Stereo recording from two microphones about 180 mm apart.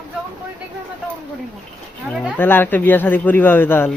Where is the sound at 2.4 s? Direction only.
10° left (ahead or behind).